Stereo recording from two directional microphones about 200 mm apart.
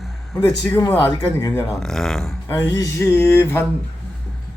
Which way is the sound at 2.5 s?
15° left (ahead or behind).